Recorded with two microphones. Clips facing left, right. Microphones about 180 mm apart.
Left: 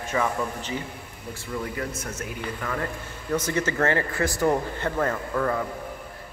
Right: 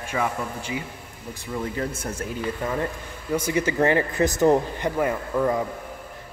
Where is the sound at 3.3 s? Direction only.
10° right (ahead or behind).